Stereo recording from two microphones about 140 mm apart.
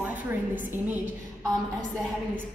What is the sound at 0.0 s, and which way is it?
Speech, 10° right (ahead or behind).